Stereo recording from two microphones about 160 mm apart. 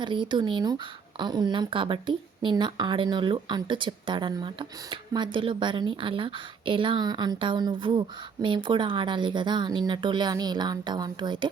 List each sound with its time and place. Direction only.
0.0 s speech: 30° right (ahead or behind)